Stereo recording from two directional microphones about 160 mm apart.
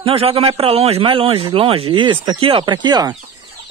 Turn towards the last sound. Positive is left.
turn(degrees=-25)  # may be behind; listen again after turning